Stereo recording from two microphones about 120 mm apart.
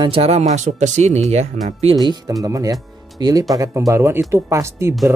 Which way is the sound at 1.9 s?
35° right (ahead or behind).